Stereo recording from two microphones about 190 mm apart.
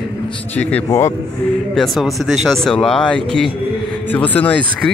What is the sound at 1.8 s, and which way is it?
Speech, centre (ahead or behind).